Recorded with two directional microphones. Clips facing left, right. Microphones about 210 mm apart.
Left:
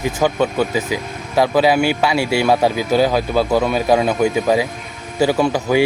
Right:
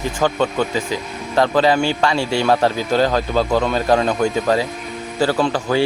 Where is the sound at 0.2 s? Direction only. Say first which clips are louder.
Left 1 dB; 10° left (ahead or behind).